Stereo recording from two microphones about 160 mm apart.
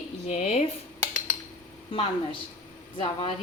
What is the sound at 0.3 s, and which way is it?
Speech, 40° left (ahead or behind).